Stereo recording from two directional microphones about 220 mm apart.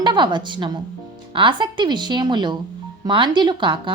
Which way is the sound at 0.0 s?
20° right (ahead or behind).